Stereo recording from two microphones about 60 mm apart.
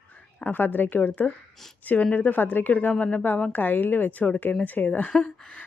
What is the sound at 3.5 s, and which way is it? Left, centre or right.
Speech, left.